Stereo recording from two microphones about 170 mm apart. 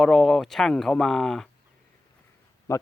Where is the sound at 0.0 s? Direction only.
Centre (ahead or behind).